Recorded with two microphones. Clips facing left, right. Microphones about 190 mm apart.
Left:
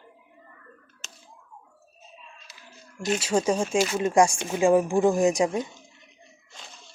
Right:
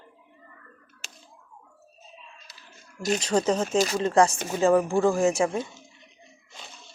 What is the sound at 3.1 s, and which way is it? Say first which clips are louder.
Speech: even; 10° left (ahead or behind).